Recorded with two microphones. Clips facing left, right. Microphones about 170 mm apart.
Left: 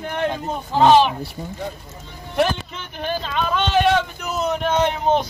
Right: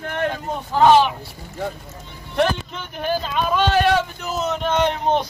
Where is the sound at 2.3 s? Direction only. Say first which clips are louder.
Even; centre (ahead or behind).